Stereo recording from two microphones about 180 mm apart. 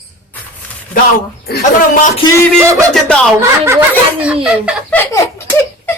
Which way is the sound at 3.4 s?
15° right (ahead or behind).